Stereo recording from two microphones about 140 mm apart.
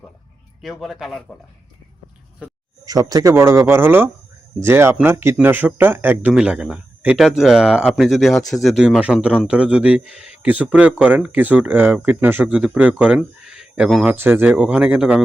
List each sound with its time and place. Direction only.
0.6 s speech: centre (ahead or behind)
2.8 s speech: 25° right (ahead or behind); by 15.2 s 5° right (ahead or behind)